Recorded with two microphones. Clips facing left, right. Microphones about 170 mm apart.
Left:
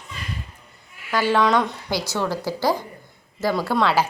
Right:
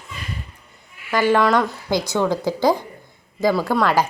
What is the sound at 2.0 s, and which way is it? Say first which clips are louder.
Speech: right 5 dB; 15° right (ahead or behind).